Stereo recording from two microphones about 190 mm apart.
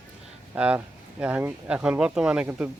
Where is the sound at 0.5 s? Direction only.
5° right (ahead or behind).